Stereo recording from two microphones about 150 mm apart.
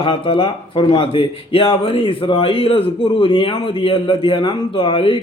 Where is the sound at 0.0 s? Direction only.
40° left (ahead or behind).